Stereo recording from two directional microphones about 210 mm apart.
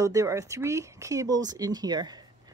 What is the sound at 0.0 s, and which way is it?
Speech, 15° right (ahead or behind).